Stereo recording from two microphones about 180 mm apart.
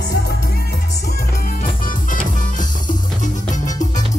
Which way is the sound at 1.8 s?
45° left (ahead or behind).